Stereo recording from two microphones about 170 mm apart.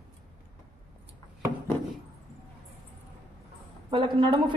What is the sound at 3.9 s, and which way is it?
Speech, 30° right (ahead or behind).